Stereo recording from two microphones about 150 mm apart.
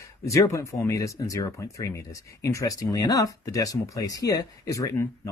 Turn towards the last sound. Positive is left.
turn(degrees=20)  # may be behind; listen again after turning